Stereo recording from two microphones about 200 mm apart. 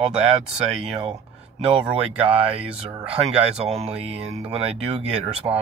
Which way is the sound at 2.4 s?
30° right (ahead or behind).